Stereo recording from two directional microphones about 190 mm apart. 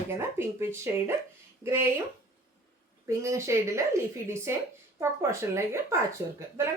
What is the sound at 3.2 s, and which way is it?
Speech, 15° right (ahead or behind).